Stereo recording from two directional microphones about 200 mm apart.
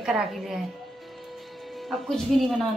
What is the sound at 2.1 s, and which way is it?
Speech, centre (ahead or behind).